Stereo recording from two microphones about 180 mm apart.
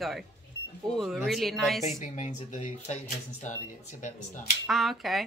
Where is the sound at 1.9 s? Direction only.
40° left (ahead or behind).